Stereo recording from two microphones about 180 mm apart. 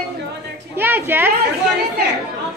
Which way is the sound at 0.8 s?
10° right (ahead or behind).